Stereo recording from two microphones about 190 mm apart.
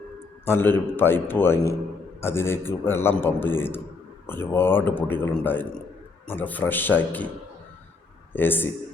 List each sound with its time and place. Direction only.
0.4 s a man's voice: 10° left (ahead or behind)
8.3 s speech: 10° left (ahead or behind)